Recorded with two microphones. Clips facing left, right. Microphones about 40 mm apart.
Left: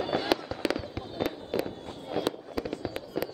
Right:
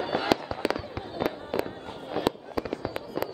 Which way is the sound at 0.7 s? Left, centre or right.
Centre.